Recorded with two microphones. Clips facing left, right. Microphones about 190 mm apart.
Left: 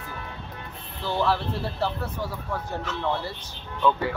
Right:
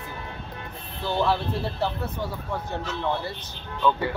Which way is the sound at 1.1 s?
25° right (ahead or behind).